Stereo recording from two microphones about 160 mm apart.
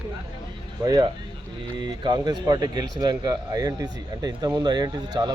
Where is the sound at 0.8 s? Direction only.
25° right (ahead or behind).